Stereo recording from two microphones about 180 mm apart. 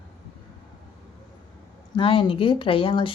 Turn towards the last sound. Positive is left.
turn(degrees=30)  # may be behind; listen again after turning